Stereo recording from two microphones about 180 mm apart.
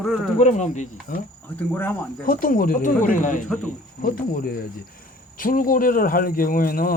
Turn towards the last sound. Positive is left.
turn(degrees=55)  # may be behind; listen again after turning